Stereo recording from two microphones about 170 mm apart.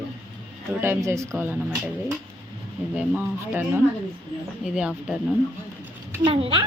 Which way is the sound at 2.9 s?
10° right (ahead or behind).